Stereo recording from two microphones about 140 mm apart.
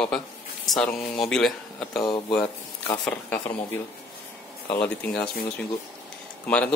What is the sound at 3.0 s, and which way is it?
Speech, 15° left (ahead or behind).